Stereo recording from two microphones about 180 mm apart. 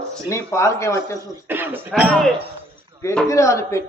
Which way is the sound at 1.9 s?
Centre (ahead or behind).